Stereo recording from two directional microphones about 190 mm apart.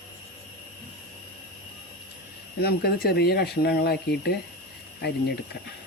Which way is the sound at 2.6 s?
55° left (ahead or behind).